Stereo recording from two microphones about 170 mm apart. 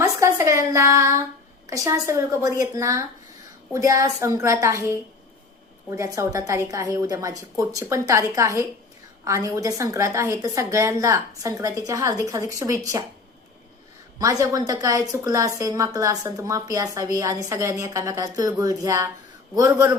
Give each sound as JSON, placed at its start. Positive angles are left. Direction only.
{"t": 0.0, "sound": "a woman's voice", "side_deg": -20}
{"t": 14.2, "sound": "a woman's voice", "side_deg": -20}